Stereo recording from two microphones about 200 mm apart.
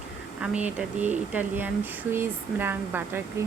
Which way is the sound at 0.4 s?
5° right (ahead or behind).